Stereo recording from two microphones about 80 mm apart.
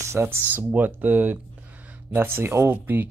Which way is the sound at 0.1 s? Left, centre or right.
Right.